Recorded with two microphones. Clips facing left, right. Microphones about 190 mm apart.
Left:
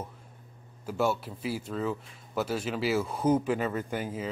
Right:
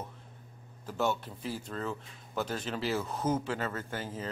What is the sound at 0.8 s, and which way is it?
Speech, 10° left (ahead or behind).